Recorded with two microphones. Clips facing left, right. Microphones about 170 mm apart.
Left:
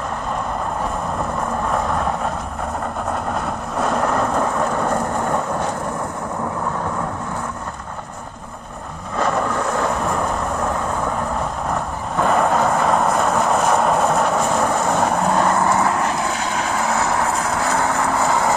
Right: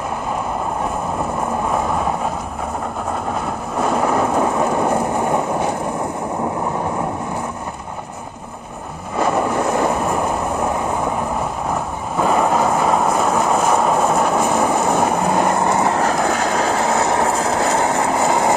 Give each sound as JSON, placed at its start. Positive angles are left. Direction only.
{"t": 1.7, "sound": "vehicle", "side_deg": -5}
{"t": 3.7, "sound": "thunder", "side_deg": -5}
{"t": 9.1, "sound": "vehicle", "side_deg": -10}
{"t": 12.2, "sound": "vehicle", "side_deg": -5}
{"t": 16.0, "sound": "vehicle", "side_deg": -40}